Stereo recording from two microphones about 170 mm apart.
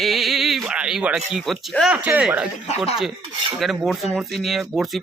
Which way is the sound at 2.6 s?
40° left (ahead or behind).